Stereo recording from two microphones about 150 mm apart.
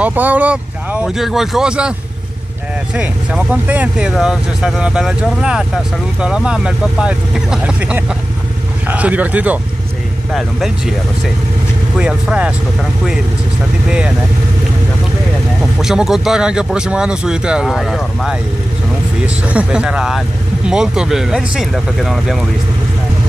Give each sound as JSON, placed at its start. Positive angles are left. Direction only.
{"t": 0.0, "sound": "speech", "side_deg": -10}
{"t": 3.0, "sound": "speech", "side_deg": -10}
{"t": 12.0, "sound": "speech", "side_deg": -5}
{"t": 13.8, "sound": "speech", "side_deg": -5}
{"t": 15.8, "sound": "speech", "side_deg": -5}